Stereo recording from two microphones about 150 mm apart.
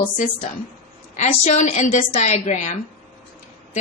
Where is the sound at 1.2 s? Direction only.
50° left (ahead or behind).